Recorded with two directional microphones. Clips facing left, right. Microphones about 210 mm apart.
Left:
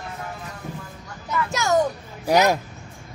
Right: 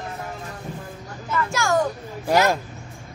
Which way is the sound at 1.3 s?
20° left (ahead or behind).